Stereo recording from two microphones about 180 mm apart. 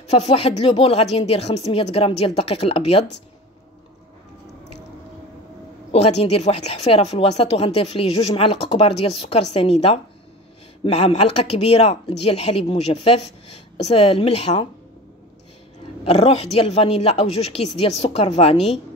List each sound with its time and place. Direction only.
0.1 s a woman's voice: 35° left (ahead or behind)
5.9 s a woman's voice: 35° left (ahead or behind)
16.0 s a woman's voice: 35° left (ahead or behind)